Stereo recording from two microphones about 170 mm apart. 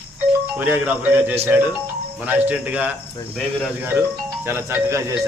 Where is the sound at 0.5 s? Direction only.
10° right (ahead or behind).